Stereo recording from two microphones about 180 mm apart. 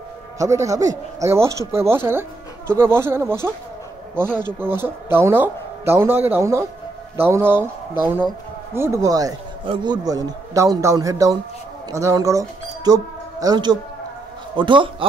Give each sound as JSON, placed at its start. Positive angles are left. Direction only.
{"t": 0.4, "sound": "speech", "side_deg": -15}
{"t": 4.3, "sound": "speech", "side_deg": 5}
{"t": 4.6, "sound": "speech", "side_deg": -10}
{"t": 8.7, "sound": "a man's voice", "side_deg": -15}